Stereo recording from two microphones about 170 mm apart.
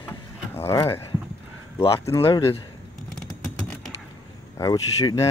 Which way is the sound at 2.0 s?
15° left (ahead or behind).